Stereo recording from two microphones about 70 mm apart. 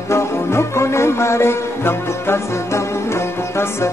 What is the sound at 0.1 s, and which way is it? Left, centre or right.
Music, left.